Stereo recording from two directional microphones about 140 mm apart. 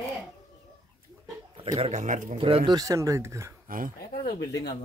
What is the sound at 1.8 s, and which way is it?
Speech, 55° right (ahead or behind).